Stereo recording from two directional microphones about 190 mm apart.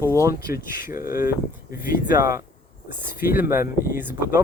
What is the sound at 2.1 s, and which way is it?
Speech, 15° right (ahead or behind).